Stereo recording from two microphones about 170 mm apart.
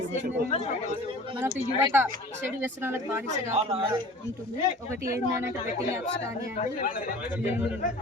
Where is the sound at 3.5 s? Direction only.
35° right (ahead or behind).